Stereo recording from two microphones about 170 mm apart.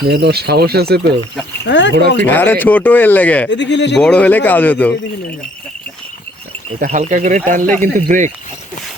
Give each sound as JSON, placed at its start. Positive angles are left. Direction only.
{"t": 0.1, "sound": "speech", "side_deg": -75}
{"t": 1.6, "sound": "speech", "side_deg": 90}
{"t": 1.9, "sound": "speech", "side_deg": -70}
{"t": 2.2, "sound": "speech", "side_deg": 10}
{"t": 3.5, "sound": "speech", "side_deg": 90}
{"t": 3.9, "sound": "speech", "side_deg": 5}
{"t": 6.7, "sound": "speech", "side_deg": -50}